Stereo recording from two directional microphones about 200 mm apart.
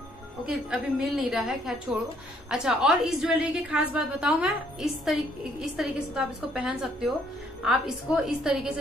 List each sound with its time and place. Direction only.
0.5 s a woman's voice: 5° right (ahead or behind)